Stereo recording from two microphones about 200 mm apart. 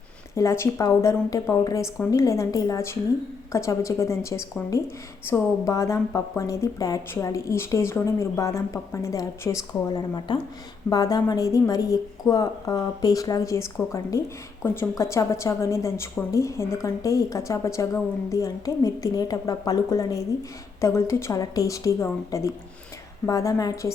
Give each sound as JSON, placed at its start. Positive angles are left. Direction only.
{"t": 0.3, "sound": "a woman's voice", "side_deg": 15}